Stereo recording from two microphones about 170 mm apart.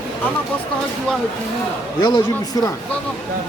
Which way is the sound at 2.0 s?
25° left (ahead or behind).